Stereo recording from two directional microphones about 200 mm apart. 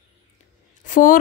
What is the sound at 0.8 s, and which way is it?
Speech, 40° left (ahead or behind).